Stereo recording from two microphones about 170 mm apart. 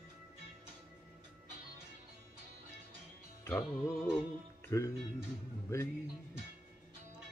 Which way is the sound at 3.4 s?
15° left (ahead or behind).